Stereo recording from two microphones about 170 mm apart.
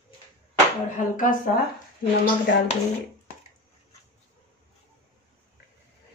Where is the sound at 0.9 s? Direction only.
50° left (ahead or behind).